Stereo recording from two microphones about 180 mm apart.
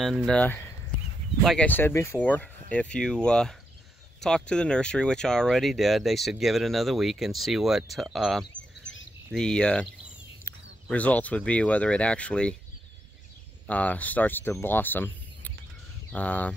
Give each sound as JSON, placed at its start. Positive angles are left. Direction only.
{"t": 0.0, "sound": "speech", "side_deg": 0}
{"t": 13.7, "sound": "speech", "side_deg": 10}